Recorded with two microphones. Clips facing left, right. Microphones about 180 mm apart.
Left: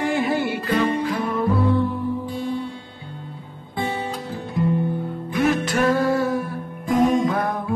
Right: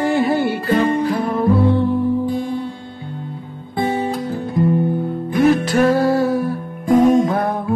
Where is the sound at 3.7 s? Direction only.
40° right (ahead or behind).